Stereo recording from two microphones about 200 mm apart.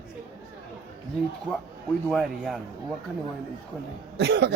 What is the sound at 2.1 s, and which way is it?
Speech, centre (ahead or behind).